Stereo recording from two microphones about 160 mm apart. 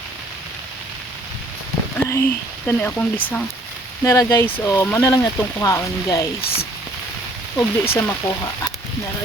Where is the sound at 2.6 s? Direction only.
10° left (ahead or behind).